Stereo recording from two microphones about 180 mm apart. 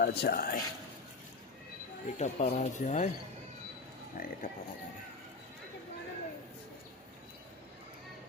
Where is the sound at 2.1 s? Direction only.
35° left (ahead or behind).